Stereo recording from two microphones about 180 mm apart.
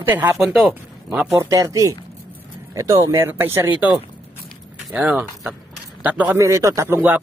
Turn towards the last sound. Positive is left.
turn(degrees=-10)  # may be behind; listen again after turning